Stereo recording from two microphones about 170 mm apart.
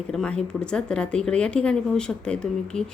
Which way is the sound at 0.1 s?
5° left (ahead or behind).